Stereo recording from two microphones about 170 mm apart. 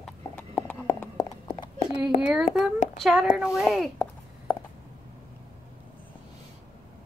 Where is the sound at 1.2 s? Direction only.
30° left (ahead or behind).